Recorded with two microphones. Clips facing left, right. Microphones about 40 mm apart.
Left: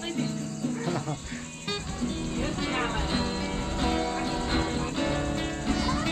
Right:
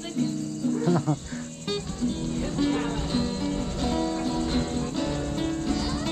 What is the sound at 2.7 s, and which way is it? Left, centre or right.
Music, left.